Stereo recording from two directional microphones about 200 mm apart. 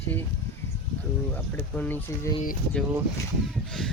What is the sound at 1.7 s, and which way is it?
Speech, 10° left (ahead or behind).